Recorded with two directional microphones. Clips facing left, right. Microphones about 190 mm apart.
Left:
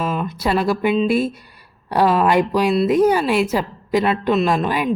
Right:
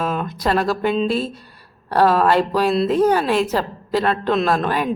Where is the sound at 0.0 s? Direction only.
5° left (ahead or behind).